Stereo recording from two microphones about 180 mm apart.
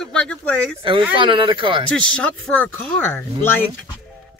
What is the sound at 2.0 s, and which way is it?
Speech, 5° left (ahead or behind).